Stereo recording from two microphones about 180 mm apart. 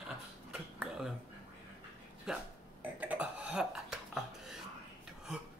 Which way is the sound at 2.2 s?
5° right (ahead or behind).